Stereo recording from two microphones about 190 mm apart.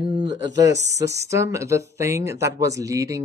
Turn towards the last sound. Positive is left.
turn(degrees=-15)  # may be behind; listen again after turning